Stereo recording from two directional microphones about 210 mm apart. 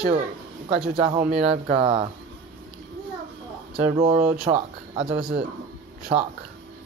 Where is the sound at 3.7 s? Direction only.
35° right (ahead or behind).